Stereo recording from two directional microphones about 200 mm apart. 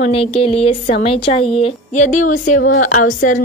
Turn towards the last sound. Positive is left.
turn(degrees=40)  # may be behind; listen again after turning